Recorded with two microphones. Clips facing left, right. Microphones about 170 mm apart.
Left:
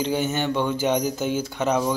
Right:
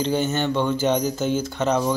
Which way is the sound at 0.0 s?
10° left (ahead or behind).